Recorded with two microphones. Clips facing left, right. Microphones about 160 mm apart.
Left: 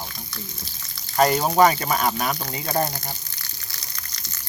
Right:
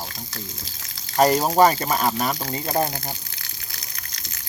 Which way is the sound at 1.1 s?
Centre (ahead or behind).